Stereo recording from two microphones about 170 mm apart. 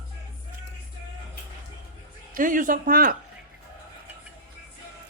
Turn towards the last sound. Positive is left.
turn(degrees=-55)  # may be behind; listen again after turning